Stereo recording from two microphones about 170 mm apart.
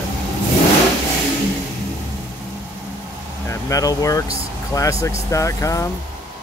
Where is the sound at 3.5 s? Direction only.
20° left (ahead or behind).